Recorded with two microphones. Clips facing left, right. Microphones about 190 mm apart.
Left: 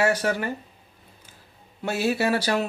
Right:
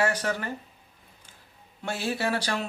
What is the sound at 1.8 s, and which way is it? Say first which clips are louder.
Speech: left 5 dB; 5° left (ahead or behind).